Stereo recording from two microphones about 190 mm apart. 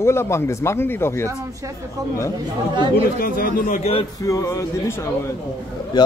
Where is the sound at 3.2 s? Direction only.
50° left (ahead or behind).